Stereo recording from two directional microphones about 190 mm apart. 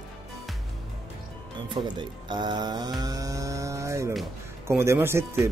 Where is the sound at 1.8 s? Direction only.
20° right (ahead or behind).